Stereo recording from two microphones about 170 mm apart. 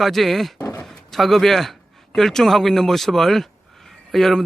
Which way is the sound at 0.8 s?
Centre (ahead or behind).